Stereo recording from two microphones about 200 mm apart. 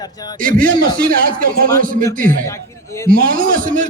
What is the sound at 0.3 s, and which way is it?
A man's voice, 45° right (ahead or behind).